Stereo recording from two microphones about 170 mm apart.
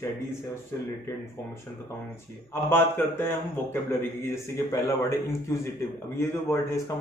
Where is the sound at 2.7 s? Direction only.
15° left (ahead or behind).